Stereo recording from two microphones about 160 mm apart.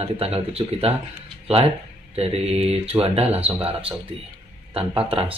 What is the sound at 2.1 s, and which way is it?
Speech, 40° right (ahead or behind).